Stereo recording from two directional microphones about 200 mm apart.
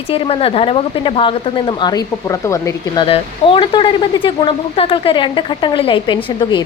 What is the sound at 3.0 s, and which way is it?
A woman's voice, 25° left (ahead or behind).